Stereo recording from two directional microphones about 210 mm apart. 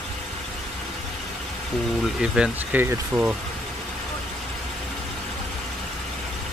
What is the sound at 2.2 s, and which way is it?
Speech, 5° right (ahead or behind).